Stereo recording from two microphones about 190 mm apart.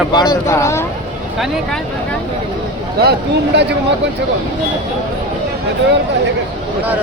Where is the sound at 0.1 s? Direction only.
20° left (ahead or behind).